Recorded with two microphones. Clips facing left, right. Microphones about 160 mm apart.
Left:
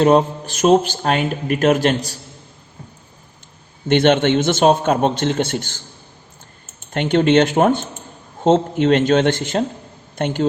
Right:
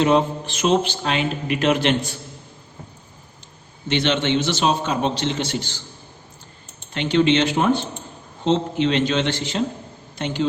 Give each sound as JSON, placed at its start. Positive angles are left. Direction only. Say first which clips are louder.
{"t": 0.0, "sound": "speech", "louder": "left 4 dB", "side_deg": 45}
{"t": 3.8, "sound": "speech", "louder": "left 7 dB", "side_deg": 55}